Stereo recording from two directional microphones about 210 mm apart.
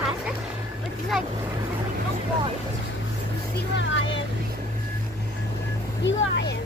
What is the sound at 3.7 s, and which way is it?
Vehicle, 60° left (ahead or behind).